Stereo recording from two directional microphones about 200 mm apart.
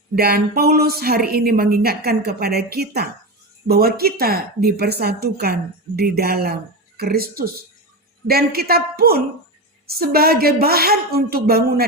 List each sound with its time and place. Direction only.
0.2 s a woman's voice: 50° right (ahead or behind)